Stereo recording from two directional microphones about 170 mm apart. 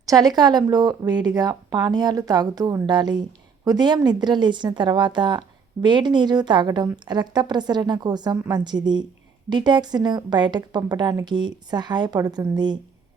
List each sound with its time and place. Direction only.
0.0 s a woman's voice: 20° right (ahead or behind)